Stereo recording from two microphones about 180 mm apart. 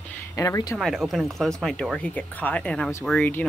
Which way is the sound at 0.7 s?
Centre (ahead or behind).